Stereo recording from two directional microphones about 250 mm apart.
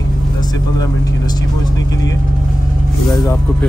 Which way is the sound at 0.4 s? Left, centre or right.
Centre.